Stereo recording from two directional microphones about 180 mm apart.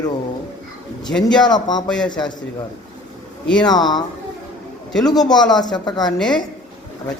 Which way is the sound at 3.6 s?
25° left (ahead or behind).